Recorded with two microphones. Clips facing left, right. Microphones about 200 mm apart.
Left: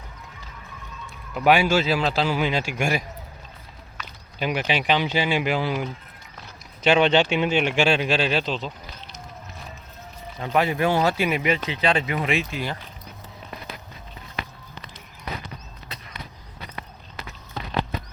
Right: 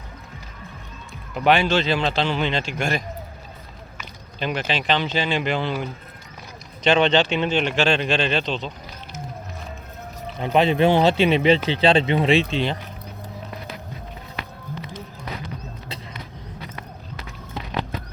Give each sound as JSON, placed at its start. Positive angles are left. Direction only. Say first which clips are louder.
{"t": 1.3, "sound": "speech", "louder": "even", "side_deg": 10}
{"t": 4.4, "sound": "speech", "louder": "left 1 dB", "side_deg": 10}
{"t": 6.8, "sound": "speech", "louder": "even", "side_deg": 10}
{"t": 10.4, "sound": "speech", "louder": "right 4 dB", "side_deg": -20}